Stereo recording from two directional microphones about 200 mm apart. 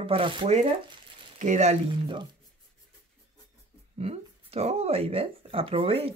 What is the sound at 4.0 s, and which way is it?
Speech, 30° right (ahead or behind).